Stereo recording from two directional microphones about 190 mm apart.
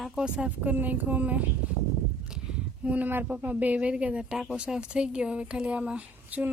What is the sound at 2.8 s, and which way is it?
Speech, 10° right (ahead or behind).